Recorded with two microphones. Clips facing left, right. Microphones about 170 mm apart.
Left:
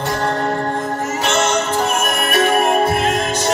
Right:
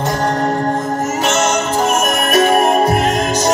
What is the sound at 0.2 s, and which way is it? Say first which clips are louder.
Music: right 3 dB; 40° right (ahead or behind).